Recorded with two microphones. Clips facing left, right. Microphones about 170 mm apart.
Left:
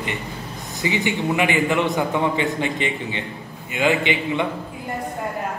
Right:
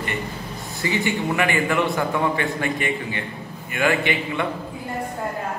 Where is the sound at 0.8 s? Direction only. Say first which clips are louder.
Left 1 dB; 15° left (ahead or behind).